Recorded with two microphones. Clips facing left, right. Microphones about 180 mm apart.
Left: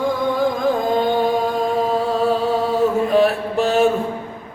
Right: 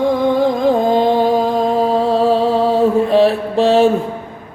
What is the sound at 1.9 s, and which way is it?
Mantra, 30° right (ahead or behind).